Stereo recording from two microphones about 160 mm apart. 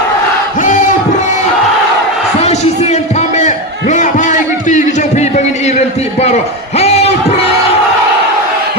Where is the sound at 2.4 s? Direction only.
40° left (ahead or behind).